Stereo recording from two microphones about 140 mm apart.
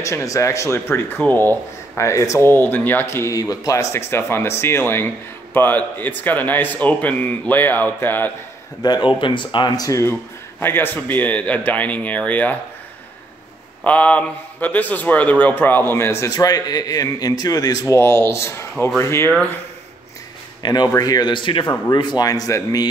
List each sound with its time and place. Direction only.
0.0 s speech: 20° left (ahead or behind)
8.8 s speech: 35° left (ahead or behind); by 12.5 s 10° left (ahead or behind)
13.8 s speech: 10° left (ahead or behind)
20.6 s speech: 30° left (ahead or behind)